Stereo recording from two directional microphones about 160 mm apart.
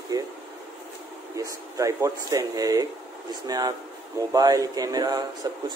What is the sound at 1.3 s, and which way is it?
Speech, 20° right (ahead or behind).